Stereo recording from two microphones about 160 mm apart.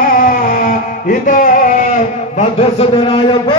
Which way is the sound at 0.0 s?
60° left (ahead or behind).